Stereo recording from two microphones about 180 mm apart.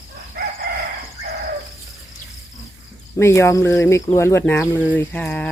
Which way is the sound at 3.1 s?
15° left (ahead or behind).